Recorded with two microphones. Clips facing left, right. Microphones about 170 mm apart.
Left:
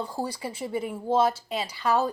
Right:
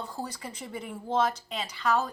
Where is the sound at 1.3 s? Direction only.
10° left (ahead or behind).